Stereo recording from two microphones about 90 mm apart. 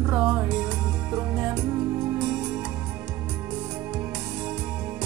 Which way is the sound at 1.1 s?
25° right (ahead or behind).